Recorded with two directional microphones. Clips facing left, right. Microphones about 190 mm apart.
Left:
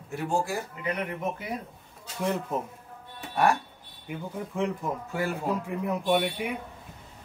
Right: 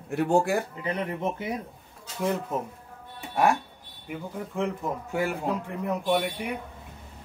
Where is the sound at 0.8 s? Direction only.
30° right (ahead or behind).